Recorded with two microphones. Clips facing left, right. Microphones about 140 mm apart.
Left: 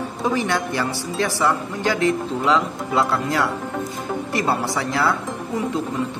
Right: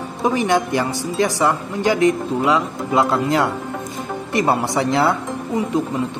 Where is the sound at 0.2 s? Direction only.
15° right (ahead or behind).